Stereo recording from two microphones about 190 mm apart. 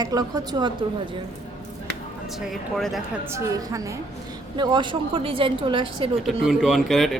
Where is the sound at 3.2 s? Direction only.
15° right (ahead or behind).